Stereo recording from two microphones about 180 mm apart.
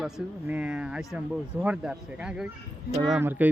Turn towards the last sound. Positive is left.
turn(degrees=-10)  # may be behind; listen again after turning